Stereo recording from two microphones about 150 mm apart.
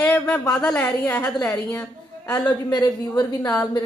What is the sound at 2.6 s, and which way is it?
Speech, 25° left (ahead or behind).